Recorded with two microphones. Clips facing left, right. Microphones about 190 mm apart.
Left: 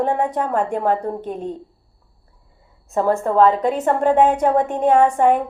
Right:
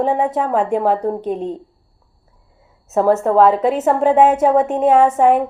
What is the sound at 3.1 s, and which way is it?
Speech, 40° right (ahead or behind).